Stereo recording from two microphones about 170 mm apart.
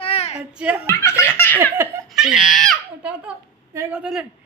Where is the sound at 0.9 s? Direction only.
15° left (ahead or behind).